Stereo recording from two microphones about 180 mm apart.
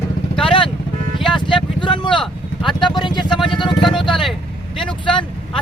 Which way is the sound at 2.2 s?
Centre (ahead or behind).